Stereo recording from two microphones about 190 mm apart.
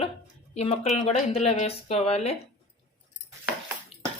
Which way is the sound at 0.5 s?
35° left (ahead or behind).